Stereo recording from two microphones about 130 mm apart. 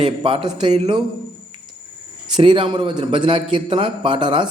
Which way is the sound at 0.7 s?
55° right (ahead or behind).